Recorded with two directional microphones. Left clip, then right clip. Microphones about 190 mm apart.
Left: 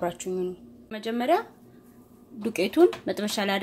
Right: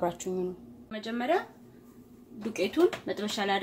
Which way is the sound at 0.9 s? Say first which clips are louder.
Left 5 dB; 45° left (ahead or behind).